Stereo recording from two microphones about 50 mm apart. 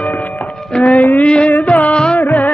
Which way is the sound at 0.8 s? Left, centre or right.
Left.